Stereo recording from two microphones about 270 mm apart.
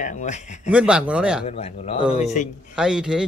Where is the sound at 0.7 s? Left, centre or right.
Centre.